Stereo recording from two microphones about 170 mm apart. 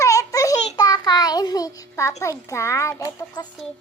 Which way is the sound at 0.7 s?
20° left (ahead or behind).